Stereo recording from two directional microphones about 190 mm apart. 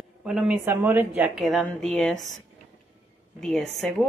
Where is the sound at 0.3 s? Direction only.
Centre (ahead or behind).